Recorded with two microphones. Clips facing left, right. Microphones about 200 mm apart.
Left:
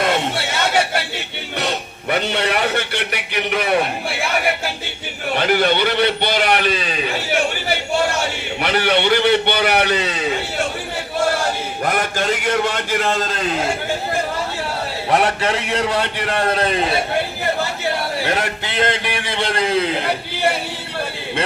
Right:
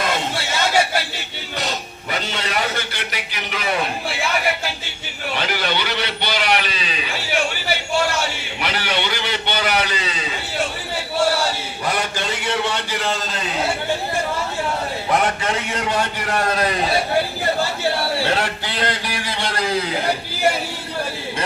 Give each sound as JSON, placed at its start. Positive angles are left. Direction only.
{"t": 0.0, "sound": "a sound", "side_deg": 60}
{"t": 1.5, "sound": "a man's voice", "side_deg": 60}
{"t": 5.3, "sound": "a man's voice", "side_deg": 55}
{"t": 8.6, "sound": "a man's voice", "side_deg": 55}
{"t": 11.9, "sound": "a man's voice", "side_deg": 50}
{"t": 15.1, "sound": "a man's voice", "side_deg": 35}
{"t": 18.3, "sound": "a man's voice", "side_deg": 20}
{"t": 19.2, "sound": "a sound", "side_deg": 25}